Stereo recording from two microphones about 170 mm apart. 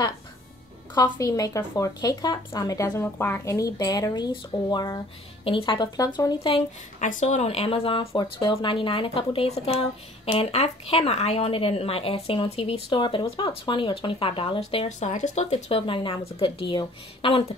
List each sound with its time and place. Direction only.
0.9 s speech: 25° left (ahead or behind)
7.0 s speech: 45° left (ahead or behind)